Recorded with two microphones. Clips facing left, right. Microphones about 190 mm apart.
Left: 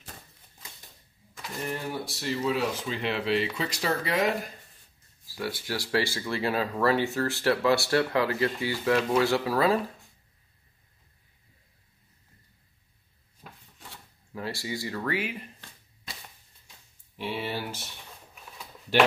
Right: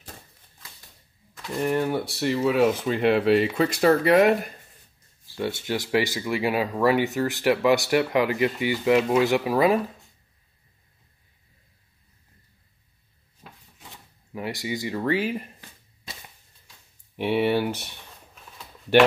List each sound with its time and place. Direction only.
1.6 s speech: 60° right (ahead or behind)
5.4 s speech: 25° right (ahead or behind)
14.3 s speech: 15° right (ahead or behind); by 15.4 s 35° right (ahead or behind)
17.2 s speech: 60° right (ahead or behind)